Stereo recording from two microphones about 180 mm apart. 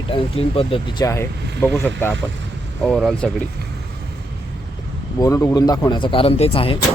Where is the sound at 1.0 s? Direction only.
15° left (ahead or behind).